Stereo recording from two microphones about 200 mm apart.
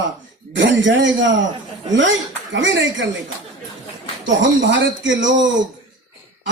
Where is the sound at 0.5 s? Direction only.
65° right (ahead or behind).